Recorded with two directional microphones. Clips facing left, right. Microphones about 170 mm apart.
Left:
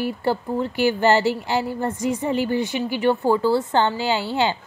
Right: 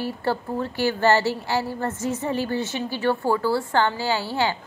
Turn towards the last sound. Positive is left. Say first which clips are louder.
# left 2 dB
turn(degrees=20)  # may be behind; listen again after turning